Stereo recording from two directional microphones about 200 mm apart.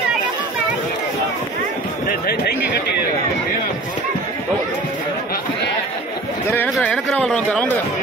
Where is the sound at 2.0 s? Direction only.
50° left (ahead or behind).